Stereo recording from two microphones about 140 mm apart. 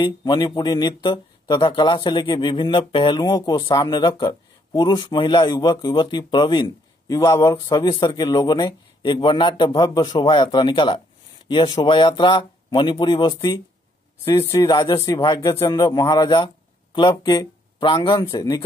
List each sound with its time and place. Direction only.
0.0 s speech: 30° left (ahead or behind)
14.2 s speech: 25° left (ahead or behind)